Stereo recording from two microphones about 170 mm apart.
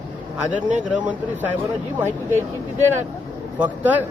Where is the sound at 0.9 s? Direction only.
10° right (ahead or behind).